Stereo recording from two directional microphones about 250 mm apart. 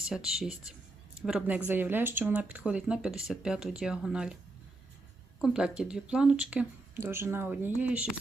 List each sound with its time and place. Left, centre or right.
0.1 s speech: centre
5.4 s speech: centre